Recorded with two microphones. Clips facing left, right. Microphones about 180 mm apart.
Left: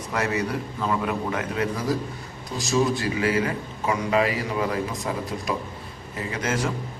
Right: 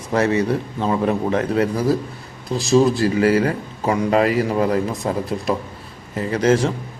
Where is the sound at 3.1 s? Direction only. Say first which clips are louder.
Right 7 dB; 45° right (ahead or behind).